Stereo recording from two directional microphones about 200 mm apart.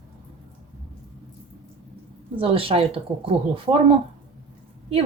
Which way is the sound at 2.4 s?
30° right (ahead or behind).